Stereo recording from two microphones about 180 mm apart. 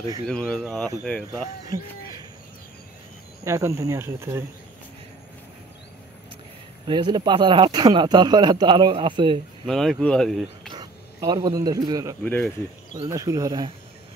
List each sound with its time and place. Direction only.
0.3 s speech: 5° left (ahead or behind)
3.4 s speech: 15° right (ahead or behind)
6.9 s speech: 25° right (ahead or behind)
9.7 s speech: centre (ahead or behind)
10.7 s speech: 20° right (ahead or behind)
12.2 s speech: 5° left (ahead or behind)
13.1 s speech: 20° right (ahead or behind)